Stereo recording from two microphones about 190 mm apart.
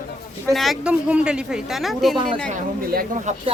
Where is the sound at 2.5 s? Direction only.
45° right (ahead or behind).